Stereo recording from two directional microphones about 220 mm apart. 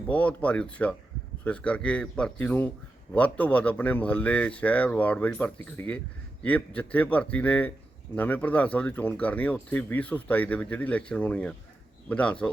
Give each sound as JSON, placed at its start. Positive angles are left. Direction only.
{"t": 0.1, "sound": "a man's voice", "side_deg": 5}